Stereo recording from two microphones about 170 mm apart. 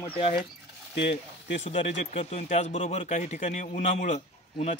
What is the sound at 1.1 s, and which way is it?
Speech, 40° left (ahead or behind).